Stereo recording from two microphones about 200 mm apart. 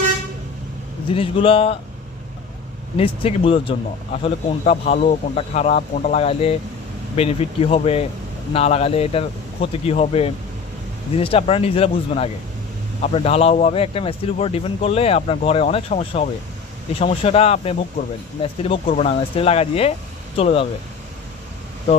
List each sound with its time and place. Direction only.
1.1 s speech: 25° left (ahead or behind)
3.0 s speech: 25° left (ahead or behind)